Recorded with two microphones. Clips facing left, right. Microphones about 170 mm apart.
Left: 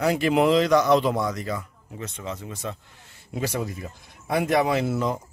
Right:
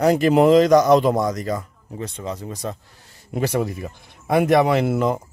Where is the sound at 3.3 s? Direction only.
60° right (ahead or behind).